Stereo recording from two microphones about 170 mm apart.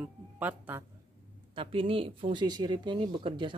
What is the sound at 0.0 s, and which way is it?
Speech, 10° right (ahead or behind).